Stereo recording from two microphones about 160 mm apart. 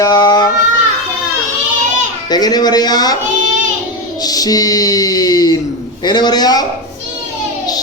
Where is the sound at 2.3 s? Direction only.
25° left (ahead or behind).